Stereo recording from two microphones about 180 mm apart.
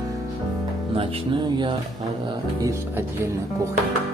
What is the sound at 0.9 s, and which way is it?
Speech, 30° right (ahead or behind).